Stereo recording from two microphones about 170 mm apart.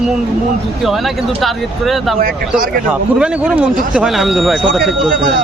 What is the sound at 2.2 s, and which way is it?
Speech, 55° right (ahead or behind).